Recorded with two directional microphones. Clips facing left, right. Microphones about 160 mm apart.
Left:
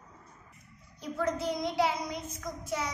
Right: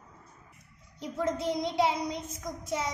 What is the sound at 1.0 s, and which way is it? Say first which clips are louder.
A child's voice: right 1 dB; 25° right (ahead or behind).